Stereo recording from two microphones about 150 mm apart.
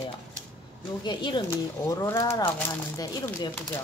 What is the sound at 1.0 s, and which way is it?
Speech, 30° left (ahead or behind).